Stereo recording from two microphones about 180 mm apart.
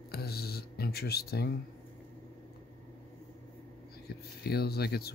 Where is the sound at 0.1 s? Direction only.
60° left (ahead or behind).